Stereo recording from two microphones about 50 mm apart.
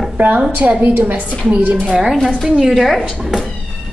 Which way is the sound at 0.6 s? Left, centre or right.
Right.